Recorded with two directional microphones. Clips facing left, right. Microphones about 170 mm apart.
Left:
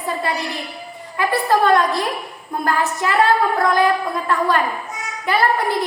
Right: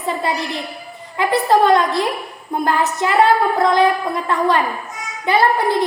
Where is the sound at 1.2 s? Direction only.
20° right (ahead or behind).